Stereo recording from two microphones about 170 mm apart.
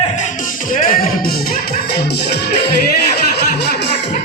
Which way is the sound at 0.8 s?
55° left (ahead or behind).